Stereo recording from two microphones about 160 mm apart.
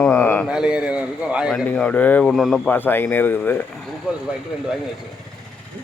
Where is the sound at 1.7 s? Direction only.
10° left (ahead or behind).